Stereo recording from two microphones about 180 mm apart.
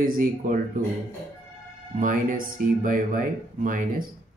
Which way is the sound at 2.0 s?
45° right (ahead or behind).